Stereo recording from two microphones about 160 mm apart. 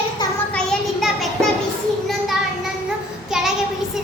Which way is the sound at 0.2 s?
25° left (ahead or behind).